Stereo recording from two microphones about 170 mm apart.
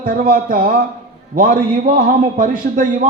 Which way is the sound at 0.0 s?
55° right (ahead or behind).